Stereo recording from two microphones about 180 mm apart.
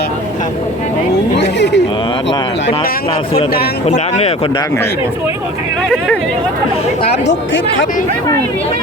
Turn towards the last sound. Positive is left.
turn(degrees=85)